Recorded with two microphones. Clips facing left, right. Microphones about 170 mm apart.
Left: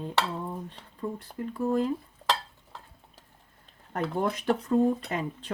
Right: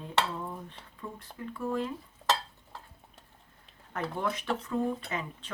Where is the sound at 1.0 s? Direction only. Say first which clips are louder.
Left 7 dB; 35° left (ahead or behind).